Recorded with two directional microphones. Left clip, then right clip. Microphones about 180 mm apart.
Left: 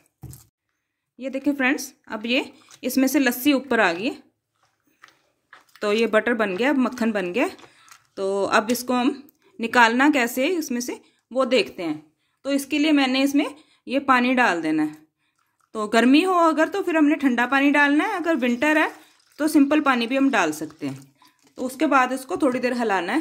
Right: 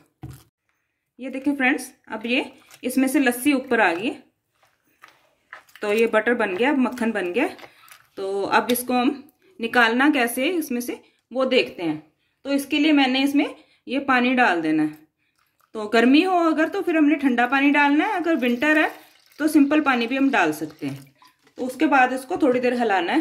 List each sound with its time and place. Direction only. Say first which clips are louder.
1.1 s speech: left 1 dB; 50° left (ahead or behind)
5.8 s speech: even; 50° left (ahead or behind)